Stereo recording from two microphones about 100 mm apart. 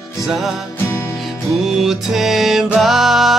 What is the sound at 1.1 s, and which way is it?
Music, centre (ahead or behind).